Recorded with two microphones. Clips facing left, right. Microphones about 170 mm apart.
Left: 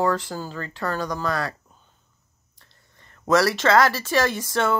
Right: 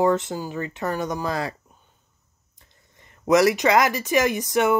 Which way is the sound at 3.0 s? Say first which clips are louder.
Right 2 dB; 15° right (ahead or behind).